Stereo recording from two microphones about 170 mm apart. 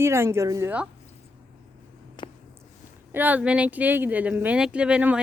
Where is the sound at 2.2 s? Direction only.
30° left (ahead or behind).